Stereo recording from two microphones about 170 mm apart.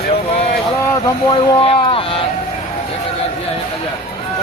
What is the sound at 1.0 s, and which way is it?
Speech, 35° left (ahead or behind).